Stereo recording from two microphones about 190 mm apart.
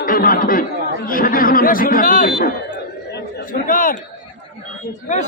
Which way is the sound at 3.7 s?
45° left (ahead or behind).